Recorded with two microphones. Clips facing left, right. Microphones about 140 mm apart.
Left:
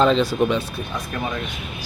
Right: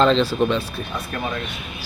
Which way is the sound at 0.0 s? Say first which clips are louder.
Even; 15° left (ahead or behind).